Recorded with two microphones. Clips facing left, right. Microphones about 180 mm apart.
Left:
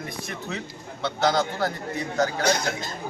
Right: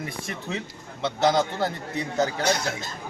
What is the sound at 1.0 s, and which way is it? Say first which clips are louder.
Speech: right 1 dB; 20° right (ahead or behind).